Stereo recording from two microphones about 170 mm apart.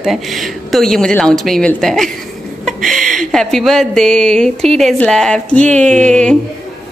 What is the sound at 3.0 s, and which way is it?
Speech, 50° right (ahead or behind).